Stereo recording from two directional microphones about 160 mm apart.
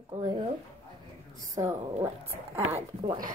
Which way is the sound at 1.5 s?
15° right (ahead or behind).